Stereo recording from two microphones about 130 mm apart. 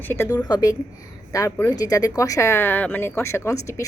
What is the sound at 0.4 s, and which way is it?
Speech, 30° left (ahead or behind).